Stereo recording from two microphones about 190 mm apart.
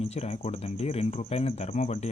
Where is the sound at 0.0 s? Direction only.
30° left (ahead or behind).